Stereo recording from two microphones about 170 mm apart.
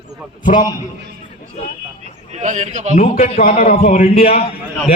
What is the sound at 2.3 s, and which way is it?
Speech, 45° right (ahead or behind).